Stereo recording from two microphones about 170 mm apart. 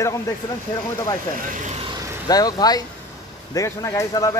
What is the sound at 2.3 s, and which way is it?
Speech, 20° left (ahead or behind).